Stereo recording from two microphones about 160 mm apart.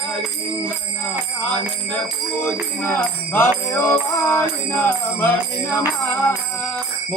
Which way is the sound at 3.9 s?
15° left (ahead or behind).